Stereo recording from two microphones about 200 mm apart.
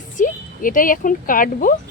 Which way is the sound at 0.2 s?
40° left (ahead or behind).